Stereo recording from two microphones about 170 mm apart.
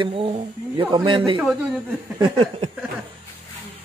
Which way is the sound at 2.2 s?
30° right (ahead or behind).